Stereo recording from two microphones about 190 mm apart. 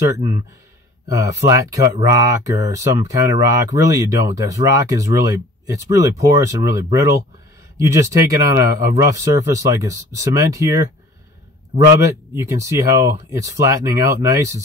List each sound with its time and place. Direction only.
0.1 s speech: 25° right (ahead or behind)
12.4 s speech: 15° right (ahead or behind)